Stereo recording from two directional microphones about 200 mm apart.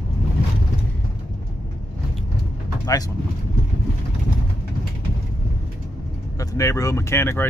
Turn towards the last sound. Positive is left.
turn(degrees=10)  # may be behind; listen again after turning